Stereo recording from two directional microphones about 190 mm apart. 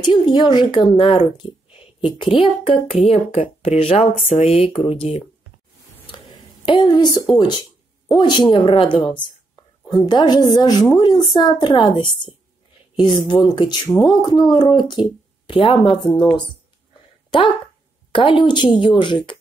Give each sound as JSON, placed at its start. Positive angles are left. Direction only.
{"t": 0.1, "sound": "speech", "side_deg": 25}
{"t": 6.1, "sound": "a sound", "side_deg": 25}
{"t": 8.1, "sound": "a woman's voice", "side_deg": 25}
{"t": 18.1, "sound": "a woman's voice", "side_deg": 25}